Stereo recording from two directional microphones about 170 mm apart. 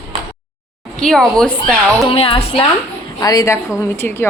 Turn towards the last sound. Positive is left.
turn(degrees=15)  # may be behind; listen again after turning